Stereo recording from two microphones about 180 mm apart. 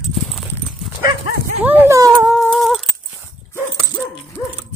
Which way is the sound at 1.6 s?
15° right (ahead or behind).